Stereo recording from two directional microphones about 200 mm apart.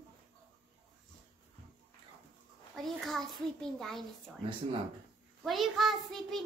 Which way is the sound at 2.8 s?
Centre (ahead or behind).